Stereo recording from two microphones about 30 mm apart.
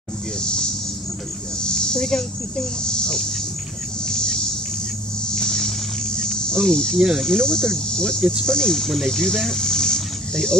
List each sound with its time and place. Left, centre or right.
0.4 s insect: left
1.6 s speech: left
4.1 s cricket: centre
5.4 s insect: centre
6.1 s cricket: left
7.9 s speech: centre
8.5 s cricket: centre
8.8 s speech: centre
9.1 s cricket: centre
9.5 s insect: centre